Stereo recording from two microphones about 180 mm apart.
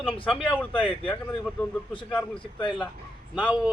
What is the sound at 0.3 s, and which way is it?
Speech, 5° left (ahead or behind).